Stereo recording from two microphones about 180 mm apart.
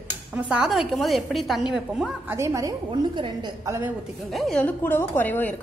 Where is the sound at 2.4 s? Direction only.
20° right (ahead or behind).